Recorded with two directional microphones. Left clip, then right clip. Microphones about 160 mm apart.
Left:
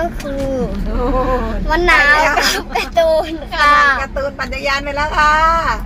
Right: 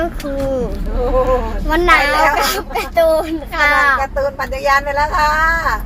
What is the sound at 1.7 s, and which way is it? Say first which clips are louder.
Speech: left 1 dB; 20° right (ahead or behind).